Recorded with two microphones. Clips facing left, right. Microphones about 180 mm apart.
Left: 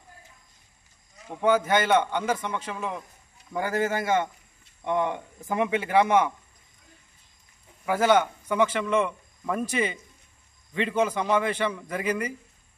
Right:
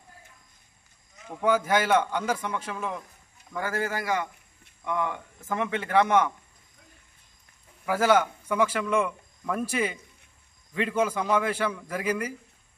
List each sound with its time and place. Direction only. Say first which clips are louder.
1.3 s a man's voice: left 2 dB; 5° right (ahead or behind)
3.5 s a man's voice: left 4 dB; 20° left (ahead or behind)
7.8 s a man's voice: left 1 dB; 5° right (ahead or behind)